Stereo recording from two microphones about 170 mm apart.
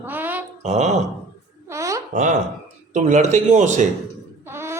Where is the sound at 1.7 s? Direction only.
15° right (ahead or behind).